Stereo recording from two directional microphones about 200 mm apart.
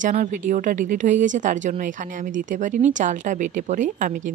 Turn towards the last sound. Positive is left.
turn(degrees=-40)  # may be behind; listen again after turning